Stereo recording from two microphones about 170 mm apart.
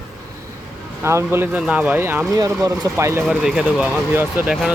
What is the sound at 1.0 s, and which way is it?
Speech, 15° right (ahead or behind).